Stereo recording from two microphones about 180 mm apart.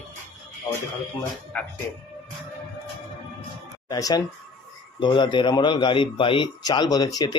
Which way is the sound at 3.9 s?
20° left (ahead or behind).